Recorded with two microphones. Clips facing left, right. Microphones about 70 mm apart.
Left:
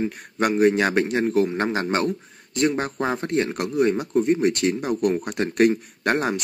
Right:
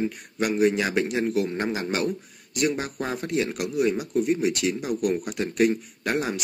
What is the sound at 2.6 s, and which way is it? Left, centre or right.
A man's voice, left.